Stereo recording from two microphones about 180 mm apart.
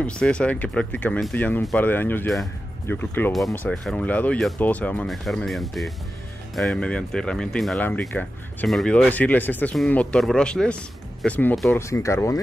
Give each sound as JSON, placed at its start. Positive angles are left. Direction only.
{"t": 0.0, "sound": "speech", "side_deg": 5}
{"t": 11.8, "sound": "speech", "side_deg": 15}